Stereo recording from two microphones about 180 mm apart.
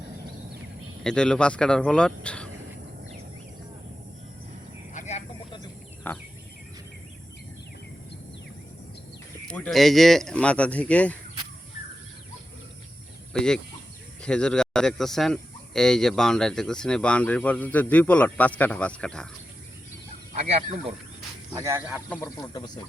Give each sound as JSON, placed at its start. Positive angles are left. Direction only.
{"t": 1.0, "sound": "speech", "side_deg": 5}
{"t": 4.9, "sound": "a sound", "side_deg": 40}
{"t": 6.0, "sound": "a sound", "side_deg": 10}
{"t": 9.5, "sound": "speech", "side_deg": 5}
{"t": 13.3, "sound": "speech", "side_deg": 5}
{"t": 20.3, "sound": "speech", "side_deg": -45}
{"t": 21.5, "sound": "speech", "side_deg": -15}
{"t": 22.2, "sound": "speech", "side_deg": 20}